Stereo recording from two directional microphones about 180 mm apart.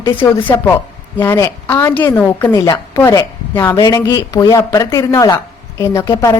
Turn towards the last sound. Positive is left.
turn(degrees=20)  # may be behind; listen again after turning